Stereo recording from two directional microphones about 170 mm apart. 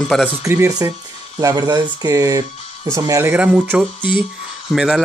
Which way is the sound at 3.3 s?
10° right (ahead or behind).